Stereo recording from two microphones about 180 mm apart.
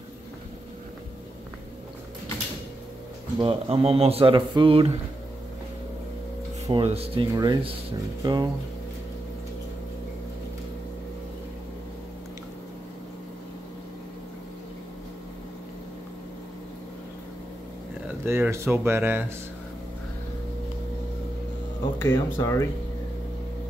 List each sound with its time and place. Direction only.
3.3 s speech: 30° right (ahead or behind)
6.7 s speech: 30° right (ahead or behind)
18.2 s speech: 15° right (ahead or behind)
21.9 s speech: 10° left (ahead or behind)